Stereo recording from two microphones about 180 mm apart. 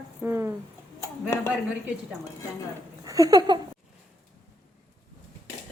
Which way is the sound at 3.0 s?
20° right (ahead or behind).